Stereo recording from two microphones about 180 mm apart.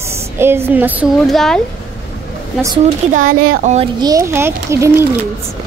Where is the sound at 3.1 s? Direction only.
50° right (ahead or behind).